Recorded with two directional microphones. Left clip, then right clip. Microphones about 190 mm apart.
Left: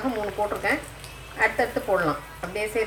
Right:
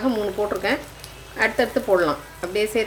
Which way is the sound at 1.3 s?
45° right (ahead or behind).